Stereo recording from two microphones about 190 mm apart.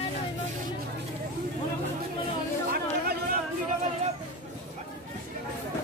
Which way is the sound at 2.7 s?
55° right (ahead or behind).